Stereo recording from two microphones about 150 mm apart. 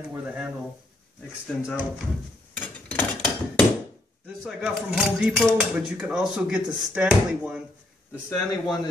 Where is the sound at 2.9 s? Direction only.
10° left (ahead or behind).